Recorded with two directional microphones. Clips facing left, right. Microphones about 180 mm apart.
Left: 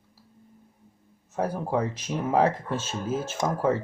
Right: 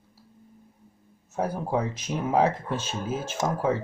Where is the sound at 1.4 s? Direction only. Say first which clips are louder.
Even; 5° left (ahead or behind).